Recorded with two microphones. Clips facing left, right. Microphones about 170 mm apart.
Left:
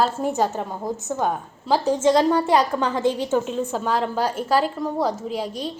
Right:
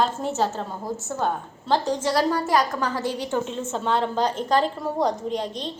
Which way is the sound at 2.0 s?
25° left (ahead or behind).